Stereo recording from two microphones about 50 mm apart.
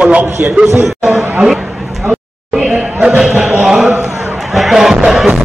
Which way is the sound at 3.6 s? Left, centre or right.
Centre.